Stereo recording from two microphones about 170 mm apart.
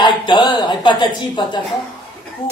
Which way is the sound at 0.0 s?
25° left (ahead or behind).